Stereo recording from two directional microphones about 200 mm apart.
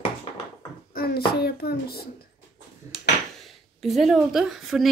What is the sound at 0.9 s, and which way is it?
A child's voice, 50° left (ahead or behind).